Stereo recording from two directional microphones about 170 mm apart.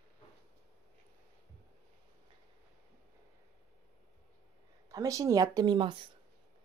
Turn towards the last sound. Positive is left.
turn(degrees=-25)  # may be behind; listen again after turning